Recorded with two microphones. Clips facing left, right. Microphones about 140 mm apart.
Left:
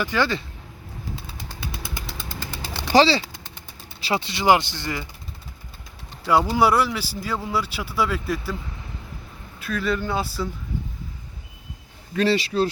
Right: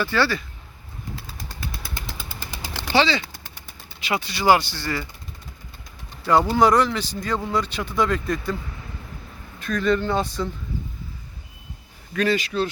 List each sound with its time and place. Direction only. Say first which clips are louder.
0.0 s speech: right 1 dB; 15° left (ahead or behind)
2.9 s speech: left 4 dB; 35° left (ahead or behind); by 5.0 s 20° left (ahead or behind)
6.5 s speech: right 2 dB; 10° left (ahead or behind)
9.6 s speech: right 3 dB; 5° left (ahead or behind)
12.1 s speech: left 1 dB; 30° left (ahead or behind)